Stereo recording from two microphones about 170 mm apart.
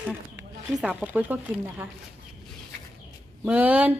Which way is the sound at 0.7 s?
5° right (ahead or behind).